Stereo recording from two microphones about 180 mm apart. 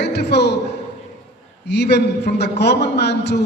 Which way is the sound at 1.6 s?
70° left (ahead or behind).